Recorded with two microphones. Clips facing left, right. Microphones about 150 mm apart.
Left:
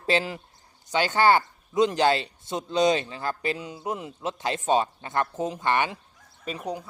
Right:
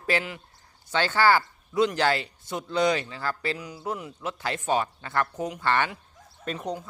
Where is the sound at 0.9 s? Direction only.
15° left (ahead or behind).